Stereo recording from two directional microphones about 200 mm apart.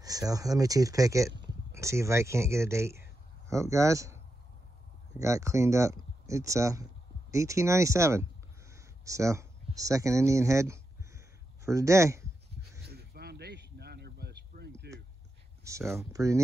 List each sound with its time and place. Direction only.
0.0 s speech: 15° right (ahead or behind)
5.2 s speech: 15° right (ahead or behind)
12.9 s a sound: 55° right (ahead or behind)
15.6 s speech: 15° right (ahead or behind)